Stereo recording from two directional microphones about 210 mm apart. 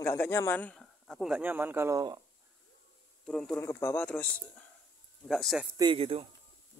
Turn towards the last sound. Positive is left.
turn(degrees=-25)  # may be behind; listen again after turning